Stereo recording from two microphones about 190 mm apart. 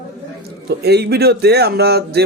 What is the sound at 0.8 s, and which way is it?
Speech, 60° right (ahead or behind).